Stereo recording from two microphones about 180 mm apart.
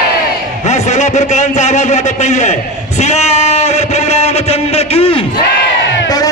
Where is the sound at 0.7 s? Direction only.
40° left (ahead or behind).